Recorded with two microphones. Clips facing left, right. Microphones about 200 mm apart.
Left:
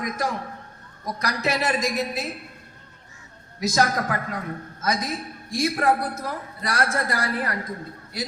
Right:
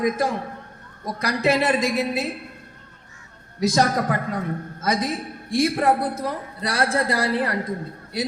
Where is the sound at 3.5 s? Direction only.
30° right (ahead or behind).